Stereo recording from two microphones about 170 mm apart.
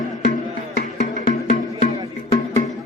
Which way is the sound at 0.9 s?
45° left (ahead or behind).